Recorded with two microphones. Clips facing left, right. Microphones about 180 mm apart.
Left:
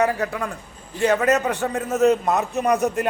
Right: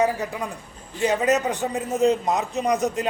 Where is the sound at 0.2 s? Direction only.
15° right (ahead or behind).